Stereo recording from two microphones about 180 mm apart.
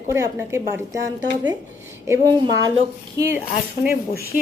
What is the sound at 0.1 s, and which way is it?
A woman's voice, 15° right (ahead or behind).